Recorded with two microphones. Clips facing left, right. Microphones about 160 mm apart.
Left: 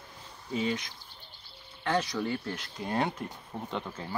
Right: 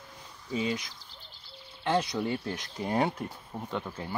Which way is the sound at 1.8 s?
20° right (ahead or behind).